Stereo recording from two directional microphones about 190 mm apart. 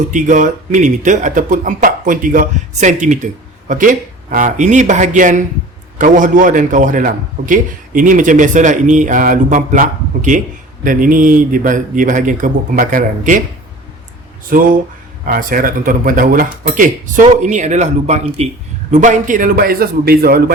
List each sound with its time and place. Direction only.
0.1 s a man's voice: 40° right (ahead or behind)
15.2 s a man's voice: 45° right (ahead or behind)